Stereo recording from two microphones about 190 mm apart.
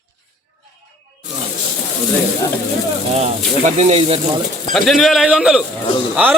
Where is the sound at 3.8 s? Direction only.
35° right (ahead or behind).